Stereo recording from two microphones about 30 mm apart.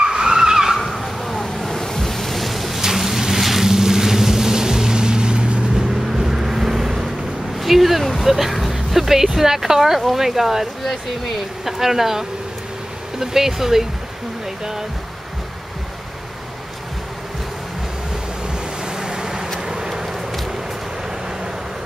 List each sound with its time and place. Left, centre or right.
0.0 s vehicle: right
0.7 s bow-wow: centre
1.9 s waves: centre
2.8 s vehicle: centre; by 5.6 s right
5.8 s vehicle: centre
8.2 s a sound: centre
11.6 s speech: centre
18.5 s vehicle: right